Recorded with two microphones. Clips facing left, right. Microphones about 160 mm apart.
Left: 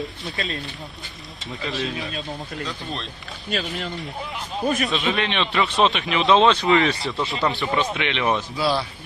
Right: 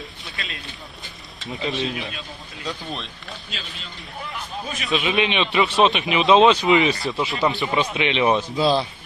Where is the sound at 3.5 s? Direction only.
65° left (ahead or behind).